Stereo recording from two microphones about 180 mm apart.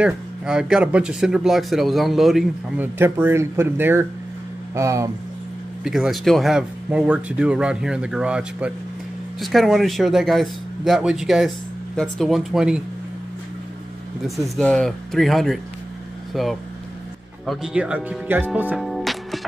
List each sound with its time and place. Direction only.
0.0 s speech: 5° right (ahead or behind)
3.0 s speech: 10° right (ahead or behind)
5.9 s speech: 5° right (ahead or behind)
14.2 s speech: centre (ahead or behind)